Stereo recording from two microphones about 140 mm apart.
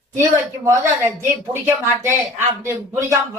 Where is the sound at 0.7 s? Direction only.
20° right (ahead or behind).